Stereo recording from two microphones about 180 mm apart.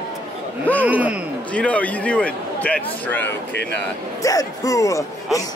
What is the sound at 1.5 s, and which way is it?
A man's voice, 10° left (ahead or behind).